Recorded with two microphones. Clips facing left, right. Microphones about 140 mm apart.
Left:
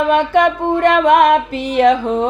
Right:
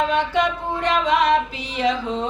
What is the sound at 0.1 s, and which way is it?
Music, 55° left (ahead or behind).